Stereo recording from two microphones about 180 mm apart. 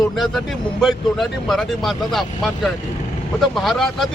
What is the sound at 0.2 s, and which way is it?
Speech, centre (ahead or behind).